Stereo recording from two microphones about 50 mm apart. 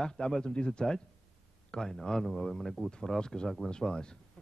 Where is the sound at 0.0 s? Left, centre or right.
Centre.